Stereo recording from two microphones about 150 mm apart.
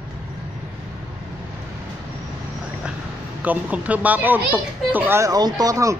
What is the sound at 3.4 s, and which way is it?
Speech, 10° right (ahead or behind).